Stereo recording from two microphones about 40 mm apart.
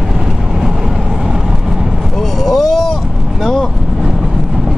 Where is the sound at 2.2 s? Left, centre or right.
Centre.